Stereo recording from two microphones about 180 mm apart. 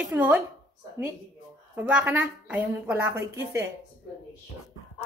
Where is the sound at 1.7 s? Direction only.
10° right (ahead or behind).